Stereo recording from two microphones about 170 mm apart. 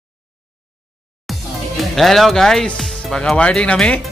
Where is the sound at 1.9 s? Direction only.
Centre (ahead or behind).